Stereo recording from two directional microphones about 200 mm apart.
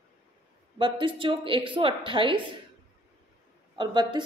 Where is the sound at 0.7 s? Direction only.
25° right (ahead or behind).